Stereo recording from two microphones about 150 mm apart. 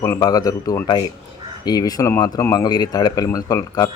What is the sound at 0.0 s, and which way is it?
Speech, 20° left (ahead or behind).